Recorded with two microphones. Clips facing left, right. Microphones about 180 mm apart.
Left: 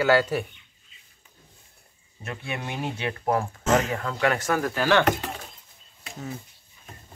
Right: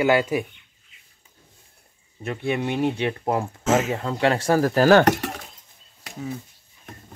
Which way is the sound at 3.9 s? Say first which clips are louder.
Right 3 dB; 30° right (ahead or behind).